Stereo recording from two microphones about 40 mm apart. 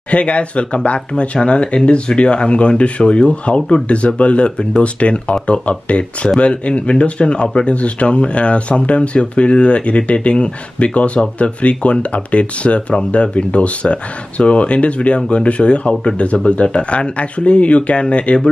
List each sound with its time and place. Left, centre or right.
0.1 s speech: left